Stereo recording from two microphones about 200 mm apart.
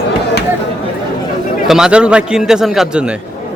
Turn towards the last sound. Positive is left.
turn(degrees=0)  # may be behind; listen again after turning